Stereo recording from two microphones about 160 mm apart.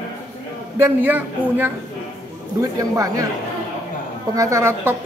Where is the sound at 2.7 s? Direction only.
20° right (ahead or behind).